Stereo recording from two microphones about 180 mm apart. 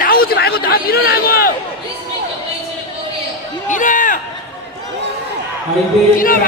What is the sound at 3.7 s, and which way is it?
Run, 45° left (ahead or behind).